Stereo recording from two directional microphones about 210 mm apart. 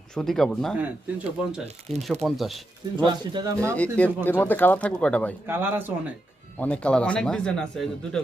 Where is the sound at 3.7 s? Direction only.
5° left (ahead or behind).